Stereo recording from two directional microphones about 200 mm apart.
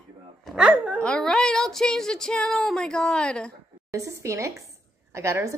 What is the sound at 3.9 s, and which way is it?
A woman's voice, 15° right (ahead or behind).